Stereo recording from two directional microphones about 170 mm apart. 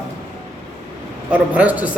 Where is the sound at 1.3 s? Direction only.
10° right (ahead or behind).